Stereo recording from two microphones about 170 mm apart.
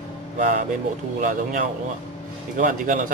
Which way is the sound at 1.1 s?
50° right (ahead or behind).